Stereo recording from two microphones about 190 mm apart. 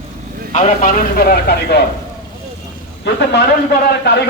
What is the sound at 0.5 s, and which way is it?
Speech, 40° left (ahead or behind).